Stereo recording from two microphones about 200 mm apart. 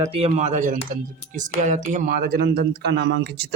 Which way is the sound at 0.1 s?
30° right (ahead or behind).